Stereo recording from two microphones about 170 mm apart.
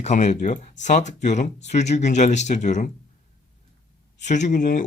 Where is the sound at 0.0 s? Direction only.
40° left (ahead or behind).